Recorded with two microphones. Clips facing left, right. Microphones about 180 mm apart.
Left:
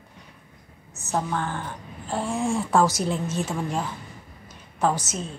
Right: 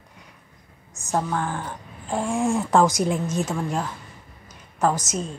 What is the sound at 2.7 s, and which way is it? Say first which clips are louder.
Speech: right 2 dB; 20° right (ahead or behind).